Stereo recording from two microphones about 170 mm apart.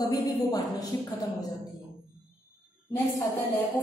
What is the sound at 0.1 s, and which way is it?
Speech, 20° left (ahead or behind).